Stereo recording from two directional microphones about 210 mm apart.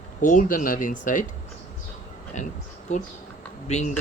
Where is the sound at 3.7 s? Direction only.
30° left (ahead or behind).